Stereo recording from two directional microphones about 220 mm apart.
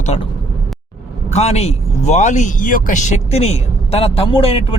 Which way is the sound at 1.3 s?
30° left (ahead or behind).